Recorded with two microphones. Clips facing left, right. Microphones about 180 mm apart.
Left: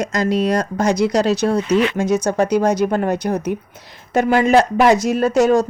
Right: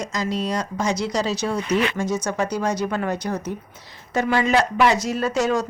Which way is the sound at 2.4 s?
60° left (ahead or behind).